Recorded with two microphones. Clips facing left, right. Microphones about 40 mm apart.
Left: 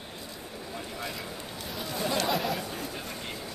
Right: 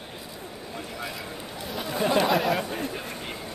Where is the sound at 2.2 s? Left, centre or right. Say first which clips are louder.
Right 6 dB; centre.